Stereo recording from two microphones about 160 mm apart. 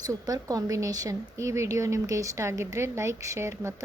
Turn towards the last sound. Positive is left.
turn(degrees=-15)  # may be behind; listen again after turning